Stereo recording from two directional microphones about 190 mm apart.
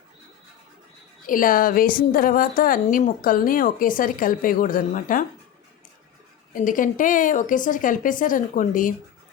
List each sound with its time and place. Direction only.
1.3 s a woman's voice: 45° left (ahead or behind)
6.5 s a woman's voice: 45° left (ahead or behind)